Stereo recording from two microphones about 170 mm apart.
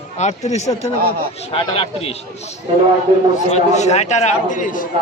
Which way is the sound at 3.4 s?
45° left (ahead or behind).